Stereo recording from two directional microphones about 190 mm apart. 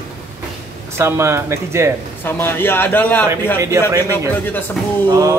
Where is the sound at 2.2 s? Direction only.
10° left (ahead or behind).